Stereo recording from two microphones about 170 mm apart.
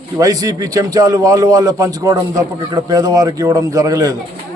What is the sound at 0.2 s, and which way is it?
A man's voice, 20° right (ahead or behind).